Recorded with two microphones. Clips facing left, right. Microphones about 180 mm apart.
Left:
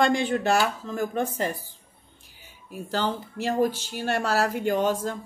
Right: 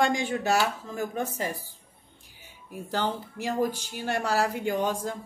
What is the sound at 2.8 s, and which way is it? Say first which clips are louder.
Speech: left 2 dB; 20° right (ahead or behind).